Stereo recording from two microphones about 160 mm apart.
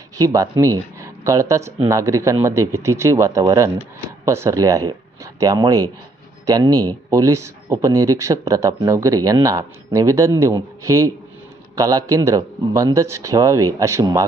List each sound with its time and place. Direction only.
0.2 s a man's voice: 20° right (ahead or behind)